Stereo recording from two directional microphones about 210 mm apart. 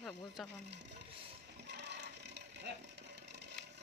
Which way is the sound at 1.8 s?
55° right (ahead or behind).